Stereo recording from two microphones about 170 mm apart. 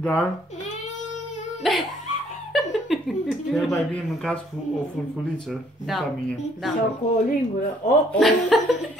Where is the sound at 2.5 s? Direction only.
Centre (ahead or behind).